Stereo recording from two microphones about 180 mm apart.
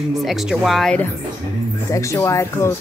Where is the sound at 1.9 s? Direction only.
15° left (ahead or behind).